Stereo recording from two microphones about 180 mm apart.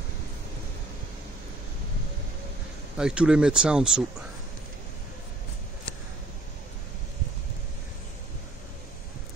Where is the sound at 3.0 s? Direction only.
5° right (ahead or behind).